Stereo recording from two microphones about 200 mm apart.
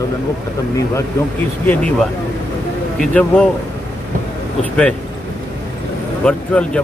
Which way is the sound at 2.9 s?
5° left (ahead or behind).